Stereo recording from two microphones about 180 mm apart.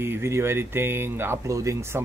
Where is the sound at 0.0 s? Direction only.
15° right (ahead or behind).